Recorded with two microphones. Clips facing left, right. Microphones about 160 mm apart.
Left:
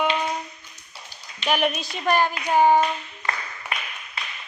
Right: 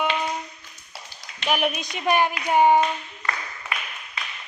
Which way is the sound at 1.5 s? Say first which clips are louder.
Left 1 dB; 5° right (ahead or behind).